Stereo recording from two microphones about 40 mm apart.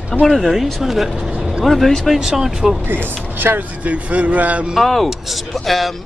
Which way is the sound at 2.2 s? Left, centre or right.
Centre.